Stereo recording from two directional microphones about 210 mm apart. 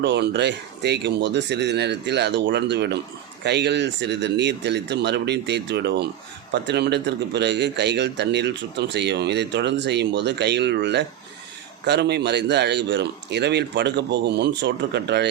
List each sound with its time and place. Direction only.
0.0 s a man's voice: 55° right (ahead or behind)